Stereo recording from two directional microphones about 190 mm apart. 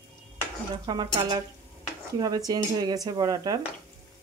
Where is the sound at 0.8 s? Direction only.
20° right (ahead or behind).